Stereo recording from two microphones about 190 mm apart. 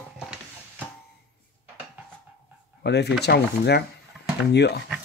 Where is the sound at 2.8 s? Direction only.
60° left (ahead or behind).